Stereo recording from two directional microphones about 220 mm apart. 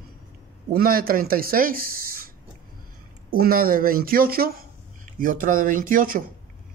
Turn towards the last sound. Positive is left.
turn(degrees=-40)  # may be behind; listen again after turning